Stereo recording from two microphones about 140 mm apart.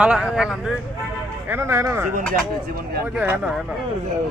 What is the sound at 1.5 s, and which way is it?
Speech, 20° right (ahead or behind).